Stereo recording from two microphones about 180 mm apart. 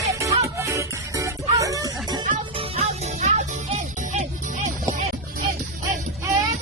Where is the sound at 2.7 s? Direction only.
40° right (ahead or behind).